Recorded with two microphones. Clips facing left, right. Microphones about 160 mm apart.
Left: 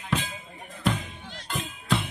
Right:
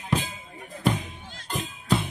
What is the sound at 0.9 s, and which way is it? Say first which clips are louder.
Music: right 1 dB; 15° right (ahead or behind).